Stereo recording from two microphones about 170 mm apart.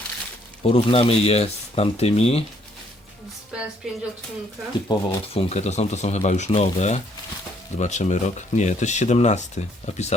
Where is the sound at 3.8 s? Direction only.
Centre (ahead or behind).